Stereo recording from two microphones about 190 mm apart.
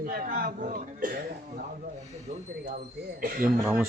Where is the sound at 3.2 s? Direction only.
50° right (ahead or behind).